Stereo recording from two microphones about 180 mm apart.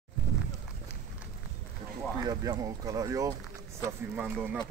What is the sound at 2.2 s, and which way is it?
Speech, 20° right (ahead or behind).